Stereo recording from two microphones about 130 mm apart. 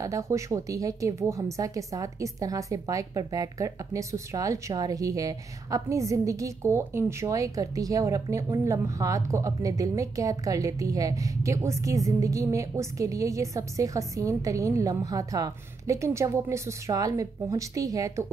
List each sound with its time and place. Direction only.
0.0 s a woman's voice: 25° right (ahead or behind)